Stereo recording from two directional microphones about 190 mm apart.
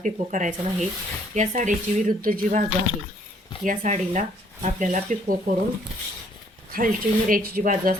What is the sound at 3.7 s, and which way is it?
Speech, 40° right (ahead or behind).